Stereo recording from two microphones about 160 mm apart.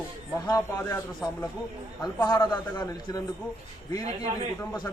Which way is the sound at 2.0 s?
25° left (ahead or behind).